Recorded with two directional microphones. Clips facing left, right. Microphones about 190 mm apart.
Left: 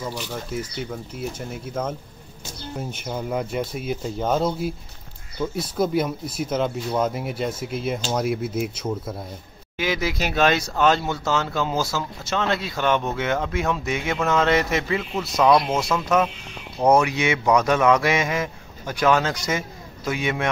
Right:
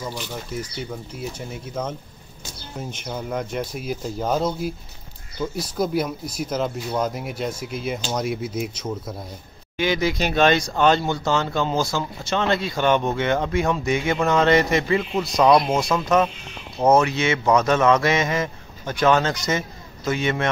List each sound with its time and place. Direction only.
0.0 s speech: centre (ahead or behind)
15.4 s speech: 15° right (ahead or behind)
16.9 s speech: 15° left (ahead or behind)